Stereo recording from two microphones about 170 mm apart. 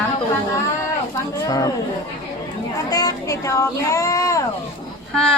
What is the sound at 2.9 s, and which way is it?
Speech, 20° left (ahead or behind).